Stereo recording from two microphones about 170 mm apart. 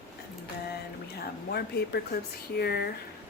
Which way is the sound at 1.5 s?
70° left (ahead or behind).